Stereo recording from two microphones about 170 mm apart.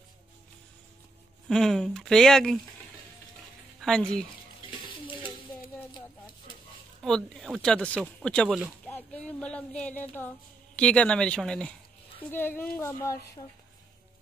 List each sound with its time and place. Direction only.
1.5 s speech: 5° left (ahead or behind)
3.8 s speech: 5° left (ahead or behind)
5.9 s a sound: 25° left (ahead or behind)
7.0 s a woman's voice: 5° left (ahead or behind)